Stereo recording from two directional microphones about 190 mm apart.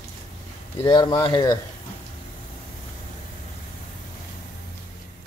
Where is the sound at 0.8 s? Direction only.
20° left (ahead or behind).